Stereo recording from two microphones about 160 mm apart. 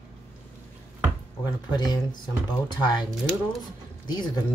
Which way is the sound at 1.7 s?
25° left (ahead or behind).